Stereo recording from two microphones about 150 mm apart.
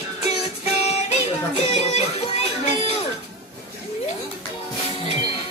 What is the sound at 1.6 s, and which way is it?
Music, 45° left (ahead or behind).